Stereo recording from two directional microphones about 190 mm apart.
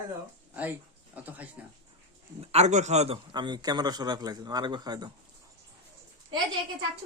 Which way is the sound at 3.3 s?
20° right (ahead or behind).